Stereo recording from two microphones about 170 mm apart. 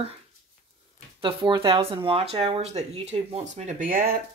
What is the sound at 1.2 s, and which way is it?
Speech, 30° right (ahead or behind).